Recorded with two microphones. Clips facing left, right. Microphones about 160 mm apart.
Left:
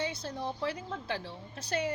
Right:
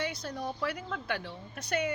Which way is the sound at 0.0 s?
30° left (ahead or behind).